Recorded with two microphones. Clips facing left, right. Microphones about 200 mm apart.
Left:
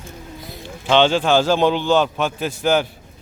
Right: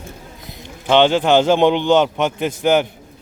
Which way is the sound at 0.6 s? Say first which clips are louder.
Right 2 dB; 15° right (ahead or behind).